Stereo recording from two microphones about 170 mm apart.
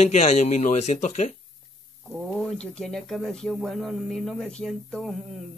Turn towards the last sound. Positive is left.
turn(degrees=0)  # may be behind; listen again after turning